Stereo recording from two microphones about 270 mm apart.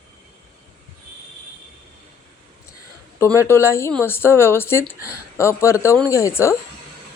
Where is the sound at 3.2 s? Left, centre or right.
Centre.